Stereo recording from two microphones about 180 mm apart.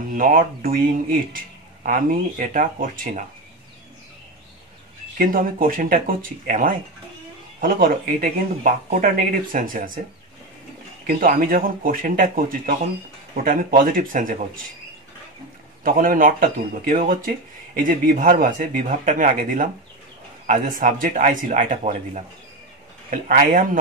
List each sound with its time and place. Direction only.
0.1 s speech: 50° right (ahead or behind)
5.2 s speech: 50° right (ahead or behind)
11.1 s speech: 50° right (ahead or behind)
15.8 s speech: 50° right (ahead or behind)